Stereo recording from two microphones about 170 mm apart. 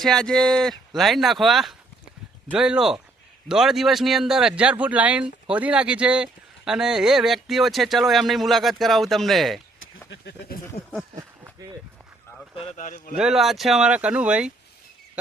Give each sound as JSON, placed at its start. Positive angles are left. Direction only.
{"t": 0.0, "sound": "speech", "side_deg": 5}
{"t": 10.1, "sound": "speech", "side_deg": 80}
{"t": 11.2, "sound": "a sound", "side_deg": -20}
{"t": 12.5, "sound": "speech", "side_deg": 40}
{"t": 13.1, "sound": "speech", "side_deg": -5}